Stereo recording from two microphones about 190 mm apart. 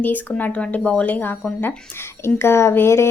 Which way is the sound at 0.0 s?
10° left (ahead or behind).